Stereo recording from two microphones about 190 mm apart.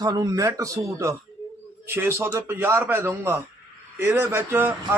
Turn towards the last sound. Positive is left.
turn(degrees=-10)  # may be behind; listen again after turning